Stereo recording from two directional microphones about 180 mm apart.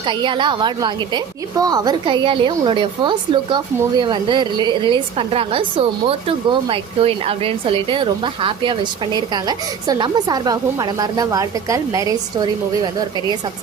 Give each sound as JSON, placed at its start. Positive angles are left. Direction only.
{"t": 0.0, "sound": "a woman's voice", "side_deg": -25}